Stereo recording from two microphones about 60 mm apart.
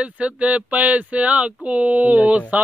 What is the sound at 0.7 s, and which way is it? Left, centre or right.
Speech, right.